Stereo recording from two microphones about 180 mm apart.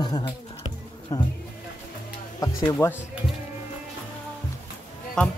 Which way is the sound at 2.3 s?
15° left (ahead or behind).